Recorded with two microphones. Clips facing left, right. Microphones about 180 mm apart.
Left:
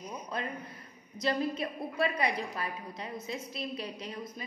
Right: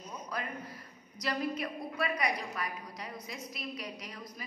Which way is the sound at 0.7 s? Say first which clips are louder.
Right 1 dB; 25° left (ahead or behind).